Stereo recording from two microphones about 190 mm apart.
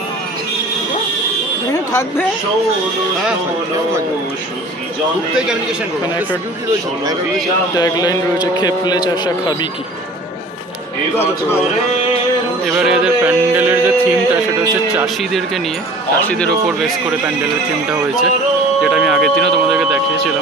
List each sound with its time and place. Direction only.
1.7 s a sound: 15° left (ahead or behind)
5.3 s speech: 5° right (ahead or behind)
7.7 s a man's voice: 20° left (ahead or behind)
11.1 s speech: 10° left (ahead or behind)
12.7 s yodeling: 5° right (ahead or behind)
15.0 s speech: centre (ahead or behind)
18.8 s speech: centre (ahead or behind)